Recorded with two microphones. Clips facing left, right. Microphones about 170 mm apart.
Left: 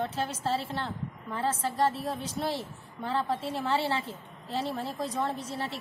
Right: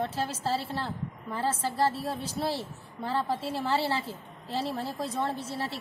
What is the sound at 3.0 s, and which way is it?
A woman's voice, 5° right (ahead or behind).